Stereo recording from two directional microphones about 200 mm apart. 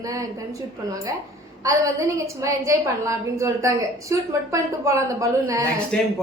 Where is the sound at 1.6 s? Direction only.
15° right (ahead or behind).